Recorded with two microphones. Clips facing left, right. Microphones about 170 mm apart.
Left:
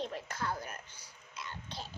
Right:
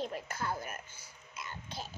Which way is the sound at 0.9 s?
50° right (ahead or behind).